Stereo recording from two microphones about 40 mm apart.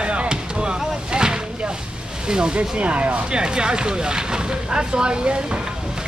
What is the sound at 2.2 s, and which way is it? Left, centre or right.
Speech, right.